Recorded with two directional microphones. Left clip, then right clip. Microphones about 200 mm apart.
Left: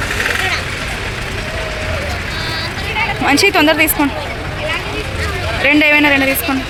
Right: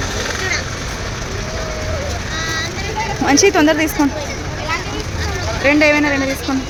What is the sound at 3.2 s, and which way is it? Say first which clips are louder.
Speech: left 1 dB; 20° right (ahead or behind).